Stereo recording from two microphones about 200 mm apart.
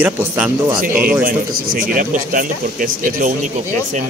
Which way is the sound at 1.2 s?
45° right (ahead or behind).